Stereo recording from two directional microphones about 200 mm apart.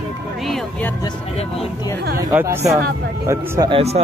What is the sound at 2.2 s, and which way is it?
Speech, 15° right (ahead or behind).